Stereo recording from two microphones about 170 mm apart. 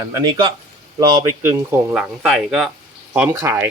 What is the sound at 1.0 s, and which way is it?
Speech, 15° right (ahead or behind).